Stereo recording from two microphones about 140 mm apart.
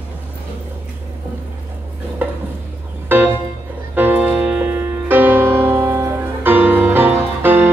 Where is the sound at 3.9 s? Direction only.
15° right (ahead or behind).